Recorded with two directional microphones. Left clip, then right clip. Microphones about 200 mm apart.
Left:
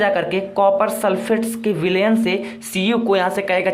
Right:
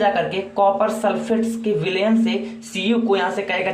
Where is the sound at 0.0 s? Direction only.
50° left (ahead or behind).